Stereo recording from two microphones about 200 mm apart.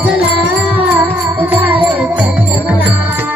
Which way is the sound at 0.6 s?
10° right (ahead or behind).